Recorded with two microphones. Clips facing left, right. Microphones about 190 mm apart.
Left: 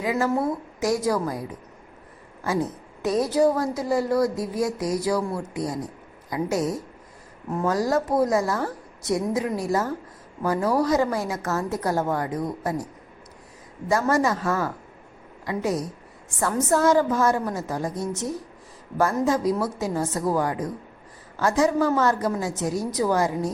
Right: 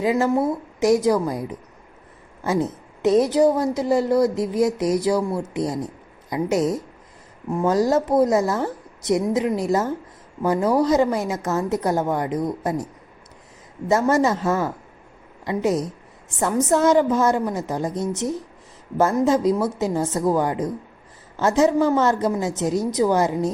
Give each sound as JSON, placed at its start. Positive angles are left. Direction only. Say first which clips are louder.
{"t": 0.0, "sound": "a woman's voice", "louder": "right 4 dB", "side_deg": -25}
{"t": 2.4, "sound": "a woman's voice", "louder": "right 3 dB", "side_deg": -20}